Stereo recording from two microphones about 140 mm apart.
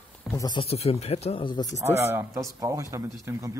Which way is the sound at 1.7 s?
20° right (ahead or behind).